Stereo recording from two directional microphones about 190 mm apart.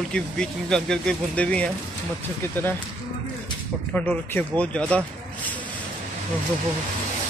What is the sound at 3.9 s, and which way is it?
Speech, 10° left (ahead or behind).